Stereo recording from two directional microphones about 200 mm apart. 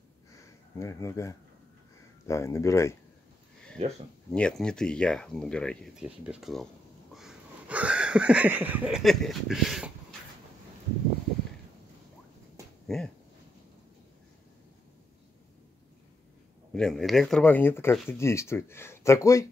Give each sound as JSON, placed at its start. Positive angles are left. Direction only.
{"t": 0.3, "sound": "a sound", "side_deg": 15}
{"t": 2.2, "sound": "speech", "side_deg": 15}
{"t": 3.8, "sound": "speech", "side_deg": -30}
{"t": 4.3, "sound": "speech", "side_deg": 5}
{"t": 7.2, "sound": "a sound", "side_deg": -5}
{"t": 12.8, "sound": "dog", "side_deg": 0}
{"t": 16.7, "sound": "speech", "side_deg": 0}